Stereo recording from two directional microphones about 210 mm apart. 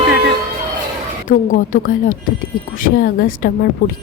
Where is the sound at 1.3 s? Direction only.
40° left (ahead or behind).